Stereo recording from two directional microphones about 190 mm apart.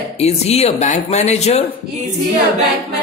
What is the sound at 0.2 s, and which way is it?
Speech, 35° left (ahead or behind).